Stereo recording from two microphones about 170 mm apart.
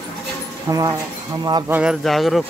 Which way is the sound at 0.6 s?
20° right (ahead or behind).